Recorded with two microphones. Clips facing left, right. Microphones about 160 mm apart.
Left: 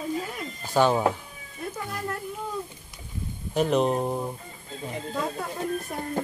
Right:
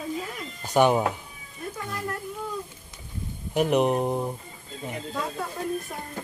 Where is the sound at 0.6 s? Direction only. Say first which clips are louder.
Right 2 dB; 15° right (ahead or behind).